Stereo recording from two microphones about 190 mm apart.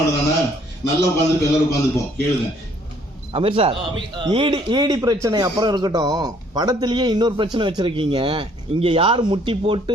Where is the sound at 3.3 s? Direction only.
30° right (ahead or behind).